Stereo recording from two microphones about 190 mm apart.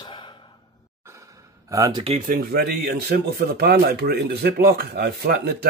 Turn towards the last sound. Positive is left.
turn(degrees=-55)  # may be behind; listen again after turning